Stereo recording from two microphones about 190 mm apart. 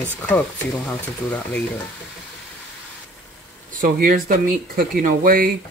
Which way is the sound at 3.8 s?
50° right (ahead or behind).